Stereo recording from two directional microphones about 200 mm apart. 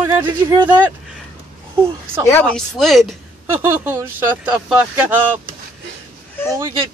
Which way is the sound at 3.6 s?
10° right (ahead or behind).